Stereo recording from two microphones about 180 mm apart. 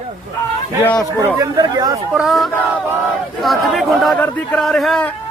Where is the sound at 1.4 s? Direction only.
20° right (ahead or behind).